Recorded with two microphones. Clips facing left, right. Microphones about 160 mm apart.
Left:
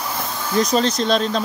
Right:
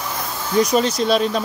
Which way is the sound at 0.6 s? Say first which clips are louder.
Right 1 dB; 10° right (ahead or behind).